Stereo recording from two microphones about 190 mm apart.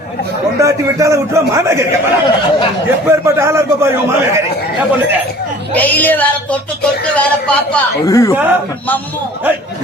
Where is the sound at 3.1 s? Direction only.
15° right (ahead or behind).